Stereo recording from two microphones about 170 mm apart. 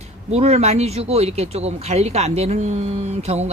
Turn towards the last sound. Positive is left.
turn(degrees=-40)  # may be behind; listen again after turning